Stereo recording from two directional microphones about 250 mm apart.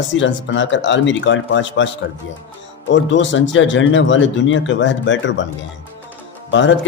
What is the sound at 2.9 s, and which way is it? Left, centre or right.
Speech, left.